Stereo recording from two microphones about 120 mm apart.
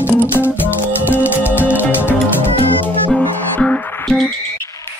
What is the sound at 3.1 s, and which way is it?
Music, 5° left (ahead or behind).